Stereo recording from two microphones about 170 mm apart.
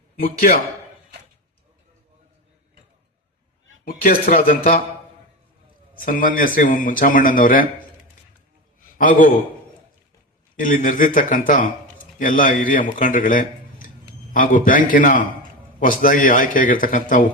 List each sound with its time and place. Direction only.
3.8 s speech: 60° left (ahead or behind)
6.1 s a man's voice: 55° left (ahead or behind)
9.0 s a man's voice: 50° left (ahead or behind)
10.6 s a man's voice: 55° left (ahead or behind)